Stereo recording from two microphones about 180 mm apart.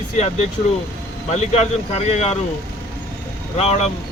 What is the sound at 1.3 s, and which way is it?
Speech, 40° left (ahead or behind).